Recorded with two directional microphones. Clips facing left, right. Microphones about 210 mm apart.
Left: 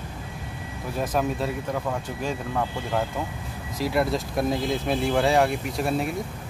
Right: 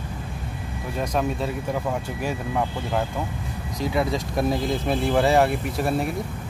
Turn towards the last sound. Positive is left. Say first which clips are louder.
# right 1 dB
turn(degrees=0)  # may be behind; listen again after turning